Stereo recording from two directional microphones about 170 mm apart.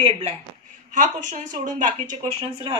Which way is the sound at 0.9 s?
45° right (ahead or behind).